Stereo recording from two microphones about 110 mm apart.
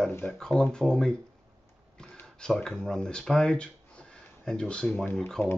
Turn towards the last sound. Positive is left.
turn(degrees=5)  # may be behind; listen again after turning